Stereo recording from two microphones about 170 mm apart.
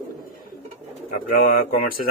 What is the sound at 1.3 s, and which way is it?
Speech, 60° left (ahead or behind).